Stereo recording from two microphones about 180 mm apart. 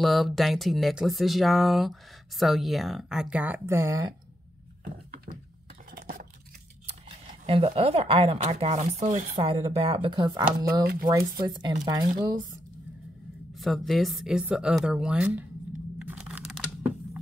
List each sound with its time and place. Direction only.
0.0 s speech: centre (ahead or behind); by 4.1 s 15° right (ahead or behind)
5.9 s a sound: 55° right (ahead or behind)
7.4 s speech: 30° right (ahead or behind)
9.4 s speech: 30° right (ahead or behind)
10.6 s speech: 55° right (ahead or behind)
11.1 s speech: 20° right (ahead or behind)
13.6 s speech: centre (ahead or behind)
16.0 s crunch: 5° right (ahead or behind)